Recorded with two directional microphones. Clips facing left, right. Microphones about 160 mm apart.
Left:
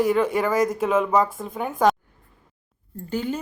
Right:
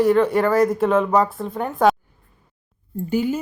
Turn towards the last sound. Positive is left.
turn(degrees=-10)  # may be behind; listen again after turning